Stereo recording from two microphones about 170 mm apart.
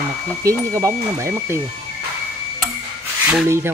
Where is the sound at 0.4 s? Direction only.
20° right (ahead or behind).